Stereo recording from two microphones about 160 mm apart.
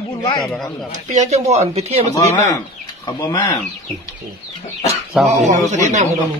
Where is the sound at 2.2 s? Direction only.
20° left (ahead or behind).